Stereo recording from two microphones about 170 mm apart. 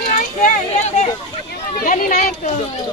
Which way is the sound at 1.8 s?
50° left (ahead or behind).